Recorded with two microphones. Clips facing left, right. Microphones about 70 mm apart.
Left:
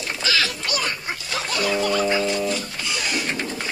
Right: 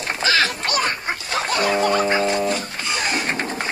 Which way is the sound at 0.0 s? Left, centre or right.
Right.